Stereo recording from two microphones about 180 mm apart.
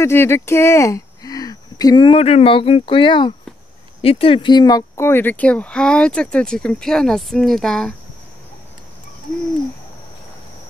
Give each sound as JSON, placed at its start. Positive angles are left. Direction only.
{"t": 0.0, "sound": "speech", "side_deg": 15}